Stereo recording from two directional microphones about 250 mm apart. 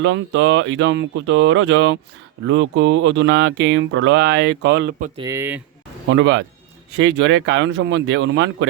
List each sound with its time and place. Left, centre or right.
0.0 s speech: right
5.2 s speech: centre
6.1 s speech: right